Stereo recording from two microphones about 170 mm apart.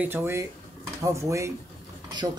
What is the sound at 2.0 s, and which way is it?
Mechanisms, 20° right (ahead or behind).